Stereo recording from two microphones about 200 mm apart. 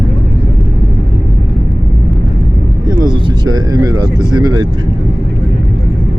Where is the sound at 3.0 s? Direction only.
20° right (ahead or behind).